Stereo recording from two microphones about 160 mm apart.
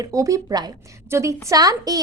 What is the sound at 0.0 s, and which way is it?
A woman's voice, 20° right (ahead or behind).